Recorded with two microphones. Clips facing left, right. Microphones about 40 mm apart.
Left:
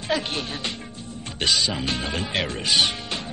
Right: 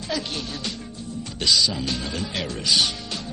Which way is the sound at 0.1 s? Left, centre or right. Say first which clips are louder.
Left 3 dB; left.